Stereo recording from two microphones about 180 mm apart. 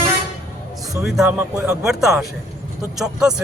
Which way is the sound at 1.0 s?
5° right (ahead or behind).